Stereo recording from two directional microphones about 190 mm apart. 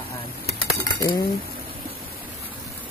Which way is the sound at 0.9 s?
20° left (ahead or behind).